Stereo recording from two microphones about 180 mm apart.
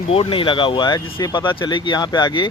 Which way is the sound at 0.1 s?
30° left (ahead or behind).